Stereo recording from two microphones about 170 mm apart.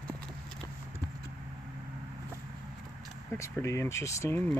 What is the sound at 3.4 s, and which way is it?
Speech, 15° left (ahead or behind).